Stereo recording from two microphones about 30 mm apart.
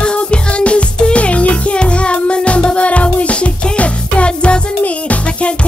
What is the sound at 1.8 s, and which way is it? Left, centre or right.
Music, left.